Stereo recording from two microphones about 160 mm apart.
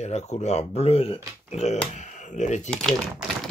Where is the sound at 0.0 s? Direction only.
45° left (ahead or behind).